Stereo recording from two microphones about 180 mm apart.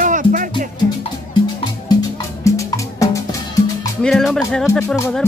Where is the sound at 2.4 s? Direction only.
15° left (ahead or behind).